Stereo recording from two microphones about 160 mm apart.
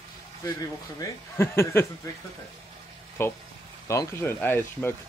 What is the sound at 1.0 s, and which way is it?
Speech, 15° left (ahead or behind).